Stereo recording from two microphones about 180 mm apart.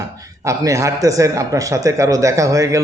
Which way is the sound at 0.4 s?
20° right (ahead or behind).